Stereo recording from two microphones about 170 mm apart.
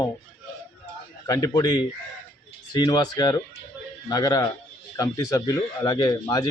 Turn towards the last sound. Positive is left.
turn(degrees=25)  # may be behind; listen again after turning